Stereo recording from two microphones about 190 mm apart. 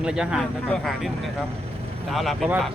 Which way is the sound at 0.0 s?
5° right (ahead or behind).